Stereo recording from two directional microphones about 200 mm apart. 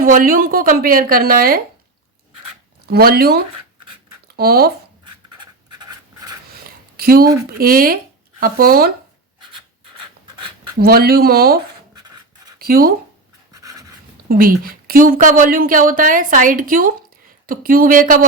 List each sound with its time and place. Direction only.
0.0 s a woman's voice: 45° right (ahead or behind)
2.8 s a woman's voice: 50° right (ahead or behind)
5.4 s writing: 20° right (ahead or behind)
6.7 s a sound: 50° right (ahead or behind)
7.6 s a woman's voice: 45° right (ahead or behind)
10.8 s a woman's voice: 50° right (ahead or behind)
12.5 s a sound: 50° right (ahead or behind)
13.5 s dog: 15° right (ahead or behind)
14.3 s a woman's voice: 45° right (ahead or behind)